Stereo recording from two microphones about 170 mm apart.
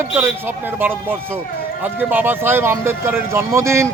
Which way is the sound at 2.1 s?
10° right (ahead or behind).